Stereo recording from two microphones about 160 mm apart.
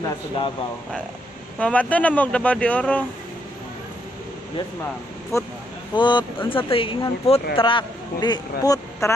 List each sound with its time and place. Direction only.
1.6 s speech: 10° left (ahead or behind)
5.3 s speech: 20° left (ahead or behind)
5.9 s speech: 30° left (ahead or behind)